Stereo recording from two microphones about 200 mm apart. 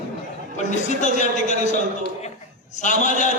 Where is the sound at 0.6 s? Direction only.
35° left (ahead or behind).